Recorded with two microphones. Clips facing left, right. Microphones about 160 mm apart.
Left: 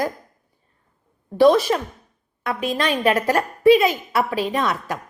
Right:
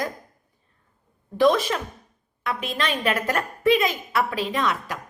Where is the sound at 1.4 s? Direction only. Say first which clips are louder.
Left 5 dB; 35° left (ahead or behind).